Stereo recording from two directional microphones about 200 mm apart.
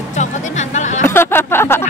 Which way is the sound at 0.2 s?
35° left (ahead or behind).